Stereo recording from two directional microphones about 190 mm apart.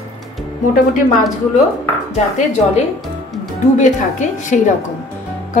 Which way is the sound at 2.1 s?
35° left (ahead or behind).